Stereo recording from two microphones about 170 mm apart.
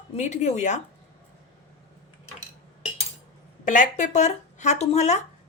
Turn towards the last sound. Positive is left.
turn(degrees=40)  # may be behind; listen again after turning